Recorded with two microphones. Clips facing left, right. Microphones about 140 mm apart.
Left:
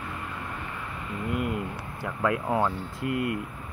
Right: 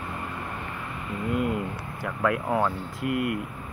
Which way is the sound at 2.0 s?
20° left (ahead or behind).